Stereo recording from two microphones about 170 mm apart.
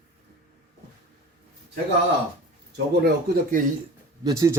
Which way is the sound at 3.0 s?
55° right (ahead or behind).